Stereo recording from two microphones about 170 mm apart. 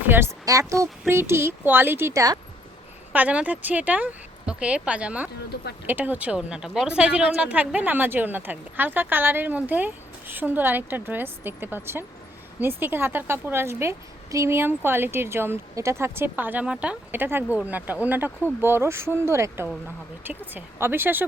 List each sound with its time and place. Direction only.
0.1 s a woman's voice: 15° right (ahead or behind)
3.1 s a woman's voice: 10° right (ahead or behind)